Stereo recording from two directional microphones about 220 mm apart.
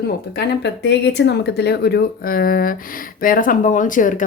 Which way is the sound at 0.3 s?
50° left (ahead or behind).